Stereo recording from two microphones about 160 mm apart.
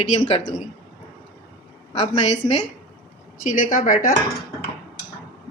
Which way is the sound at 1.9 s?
45° left (ahead or behind).